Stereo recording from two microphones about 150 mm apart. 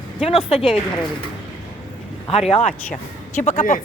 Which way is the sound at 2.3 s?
45° left (ahead or behind).